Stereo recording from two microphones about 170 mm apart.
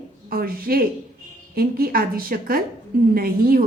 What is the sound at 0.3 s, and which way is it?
A woman's voice, 60° right (ahead or behind).